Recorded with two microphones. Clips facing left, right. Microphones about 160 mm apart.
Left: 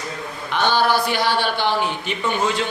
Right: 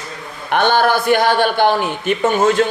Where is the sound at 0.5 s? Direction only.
55° right (ahead or behind).